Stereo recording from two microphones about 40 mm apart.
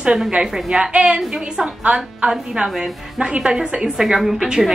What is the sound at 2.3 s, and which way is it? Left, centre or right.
A woman's voice, centre.